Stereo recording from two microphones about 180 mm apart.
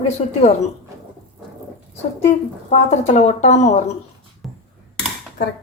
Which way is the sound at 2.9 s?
40° left (ahead or behind).